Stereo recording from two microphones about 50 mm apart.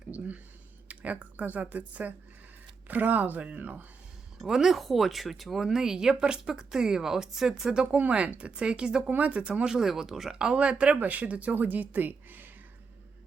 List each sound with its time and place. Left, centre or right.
0.1 s speech: right
0.9 s a sound: right
1.5 s speech: right
4.4 s speech: centre
7.7 s speech: centre
9.1 s speech: right
9.4 s speech: centre
9.7 s speech: centre
10.4 s speech: right